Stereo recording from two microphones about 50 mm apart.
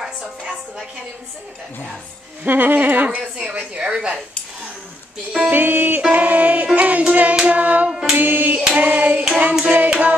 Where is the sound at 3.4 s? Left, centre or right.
Centre.